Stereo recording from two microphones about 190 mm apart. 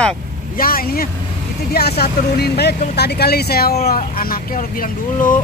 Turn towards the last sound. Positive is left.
turn(degrees=45)  # may be behind; listen again after turning